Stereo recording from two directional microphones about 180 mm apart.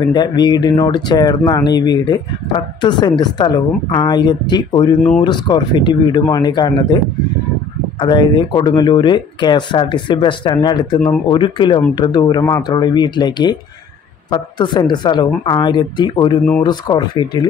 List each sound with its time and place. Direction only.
0.1 s speech: 25° left (ahead or behind)
8.0 s speech: 25° left (ahead or behind)